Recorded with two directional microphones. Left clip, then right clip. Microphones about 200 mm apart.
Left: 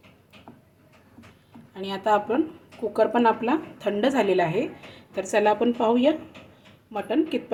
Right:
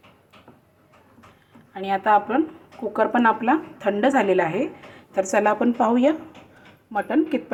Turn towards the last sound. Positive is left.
turn(degrees=-10)  # may be behind; listen again after turning